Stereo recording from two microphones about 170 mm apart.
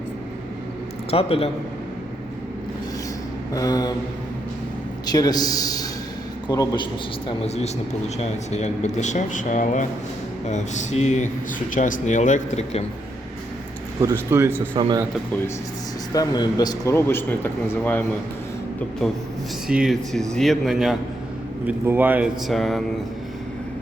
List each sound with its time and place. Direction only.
1.1 s a man's voice: 35° left (ahead or behind)
3.5 s a man's voice: 20° left (ahead or behind)
5.0 s a man's voice: 25° left (ahead or behind)
7.3 s speech: 40° left (ahead or behind)
14.0 s speech: 15° right (ahead or behind)
14.8 s speech: 25° right (ahead or behind)
16.1 s speech: 25° left (ahead or behind)
19.0 s speech: 5° left (ahead or behind)